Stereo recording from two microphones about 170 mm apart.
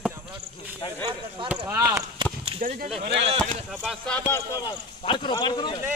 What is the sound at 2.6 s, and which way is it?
Speech, 50° right (ahead or behind).